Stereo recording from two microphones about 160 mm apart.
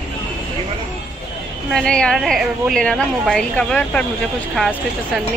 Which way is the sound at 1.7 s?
5° left (ahead or behind).